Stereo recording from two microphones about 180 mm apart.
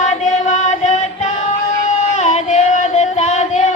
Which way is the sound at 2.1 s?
40° left (ahead or behind).